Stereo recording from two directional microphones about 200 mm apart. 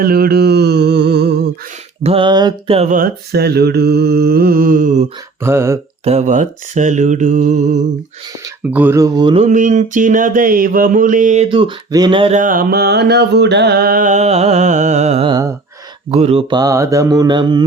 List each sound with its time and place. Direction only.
0.0 s mantra: 50° right (ahead or behind)
2.0 s speech: 25° right (ahead or behind)
2.9 s mantra: 50° right (ahead or behind)
5.4 s speech: 15° right (ahead or behind)
6.1 s music: 35° right (ahead or behind)
8.4 s speech: 10° right (ahead or behind)
9.4 s music: 40° right (ahead or behind)
11.4 s speech: 25° right (ahead or behind)
12.4 s music: 45° right (ahead or behind)
15.3 s speech: 20° right (ahead or behind)
16.1 s speech: 30° right (ahead or behind)